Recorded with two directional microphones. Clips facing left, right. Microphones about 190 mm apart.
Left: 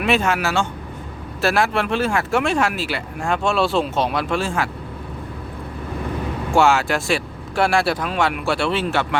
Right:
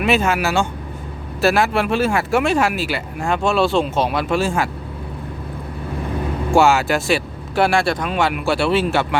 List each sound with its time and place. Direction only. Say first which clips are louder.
0.0 s speech: right 2 dB; 5° right (ahead or behind)
6.5 s speech: right 2 dB; 5° right (ahead or behind)